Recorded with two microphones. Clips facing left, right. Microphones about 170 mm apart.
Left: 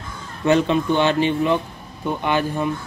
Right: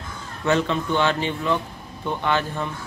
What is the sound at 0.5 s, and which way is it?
Speech, 15° left (ahead or behind).